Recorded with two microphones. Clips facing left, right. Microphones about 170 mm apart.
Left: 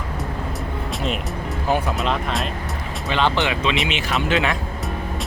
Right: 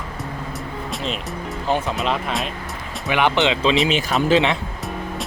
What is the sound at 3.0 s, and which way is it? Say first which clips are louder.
Speech: right 2 dB; 15° right (ahead or behind).